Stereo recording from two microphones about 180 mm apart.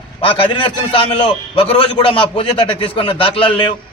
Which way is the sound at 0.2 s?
30° left (ahead or behind).